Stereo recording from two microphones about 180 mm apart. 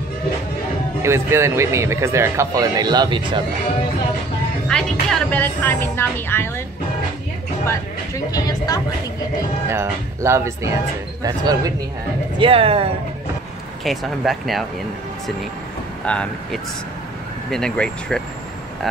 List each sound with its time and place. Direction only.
1.0 s a man's voice: 15° right (ahead or behind)
4.6 s speech: 5° left (ahead or behind)
8.3 s speech: 20° left (ahead or behind)
9.7 s a man's voice: 15° right (ahead or behind)
12.4 s speech: 30° right (ahead or behind)
13.8 s speech: centre (ahead or behind)
16.1 s speech: 5° left (ahead or behind)